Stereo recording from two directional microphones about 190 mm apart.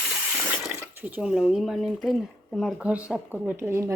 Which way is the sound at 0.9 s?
10° right (ahead or behind).